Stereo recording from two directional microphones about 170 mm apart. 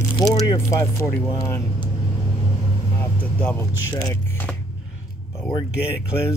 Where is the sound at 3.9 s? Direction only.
20° left (ahead or behind).